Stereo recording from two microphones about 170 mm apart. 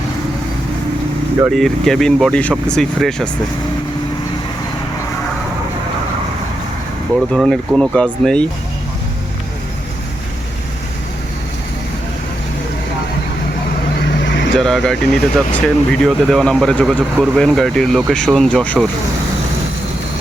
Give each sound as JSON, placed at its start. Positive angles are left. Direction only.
{"t": 1.5, "sound": "speech", "side_deg": 0}
{"t": 7.3, "sound": "speech", "side_deg": 0}
{"t": 14.3, "sound": "vehicle", "side_deg": 90}
{"t": 14.5, "sound": "speech", "side_deg": 5}